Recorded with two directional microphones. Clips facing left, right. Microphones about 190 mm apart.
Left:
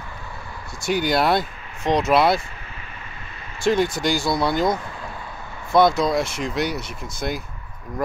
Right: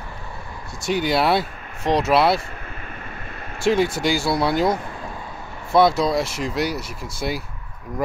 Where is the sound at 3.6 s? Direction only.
5° right (ahead or behind).